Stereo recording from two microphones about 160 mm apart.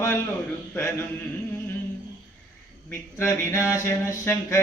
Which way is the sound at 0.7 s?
15° left (ahead or behind).